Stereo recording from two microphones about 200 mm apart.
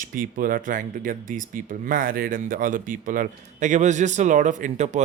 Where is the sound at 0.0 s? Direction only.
45° right (ahead or behind).